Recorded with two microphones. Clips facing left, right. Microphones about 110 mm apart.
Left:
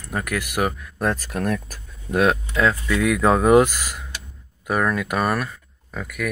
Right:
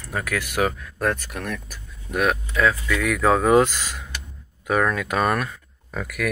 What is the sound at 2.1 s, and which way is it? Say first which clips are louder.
Speech: left 3 dB; 30° left (ahead or behind).